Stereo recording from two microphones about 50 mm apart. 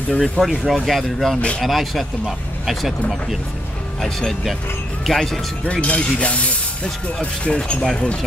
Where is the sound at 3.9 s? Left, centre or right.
Centre.